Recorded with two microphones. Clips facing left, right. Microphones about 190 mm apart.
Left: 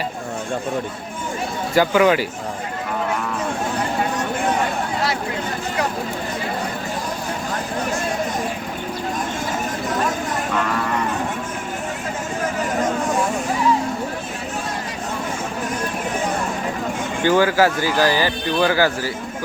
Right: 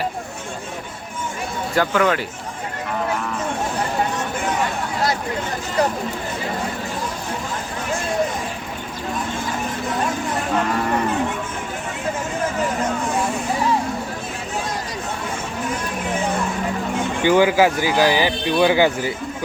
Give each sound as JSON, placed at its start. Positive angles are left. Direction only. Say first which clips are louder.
{"t": 1.7, "sound": "speech", "louder": "left 3 dB", "side_deg": 5}
{"t": 17.2, "sound": "speech", "louder": "right 1 dB", "side_deg": -15}